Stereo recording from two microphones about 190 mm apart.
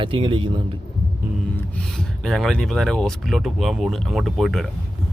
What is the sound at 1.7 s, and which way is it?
Speech, 5° left (ahead or behind).